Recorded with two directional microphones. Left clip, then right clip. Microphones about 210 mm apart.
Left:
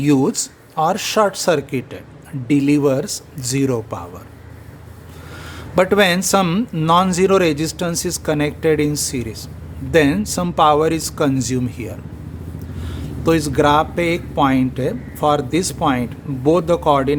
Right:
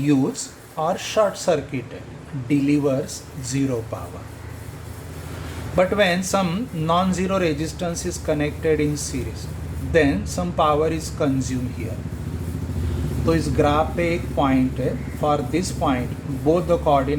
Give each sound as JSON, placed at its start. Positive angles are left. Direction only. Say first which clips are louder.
{"t": 0.0, "sound": "speech", "louder": "left 5 dB", "side_deg": 55}
{"t": 5.7, "sound": "speech", "louder": "left 4 dB", "side_deg": 55}
{"t": 13.2, "sound": "speech", "louder": "left 5 dB", "side_deg": 55}